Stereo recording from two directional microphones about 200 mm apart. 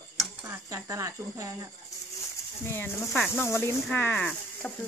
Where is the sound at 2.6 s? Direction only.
10° left (ahead or behind).